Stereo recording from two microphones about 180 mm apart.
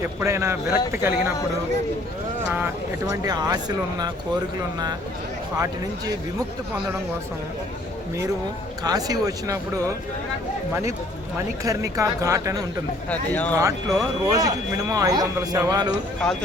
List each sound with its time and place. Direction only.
0.0 s speech: 15° right (ahead or behind)
3.1 s speech: 20° right (ahead or behind)
5.5 s speech: 20° right (ahead or behind)
8.8 s speech: 20° right (ahead or behind)
11.6 s speech: 20° right (ahead or behind)
13.1 s speech: 10° left (ahead or behind)
13.6 s speech: 20° right (ahead or behind)
16.2 s speech: 5° left (ahead or behind)